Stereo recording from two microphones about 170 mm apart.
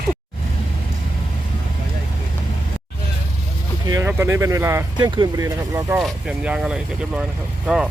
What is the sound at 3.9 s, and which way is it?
Speech, 15° right (ahead or behind).